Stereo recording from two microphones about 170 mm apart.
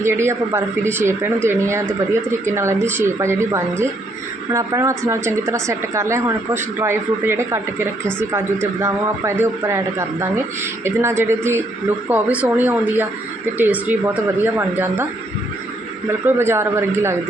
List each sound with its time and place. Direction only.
0.0 s a man's voice: 15° right (ahead or behind)
16.2 s a man's voice: 15° right (ahead or behind)